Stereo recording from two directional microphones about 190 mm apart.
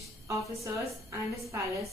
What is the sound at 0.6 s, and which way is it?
A woman's voice, 15° right (ahead or behind).